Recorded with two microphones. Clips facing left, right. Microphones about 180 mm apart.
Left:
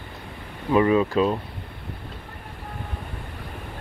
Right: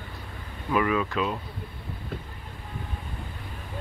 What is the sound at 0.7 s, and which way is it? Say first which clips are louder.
Speech: left 6 dB; 30° left (ahead or behind).